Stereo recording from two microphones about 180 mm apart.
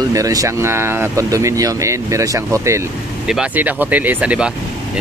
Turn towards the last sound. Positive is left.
turn(degrees=-5)  # may be behind; listen again after turning